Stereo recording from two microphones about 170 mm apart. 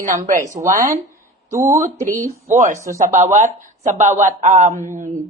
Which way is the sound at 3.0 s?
45° right (ahead or behind).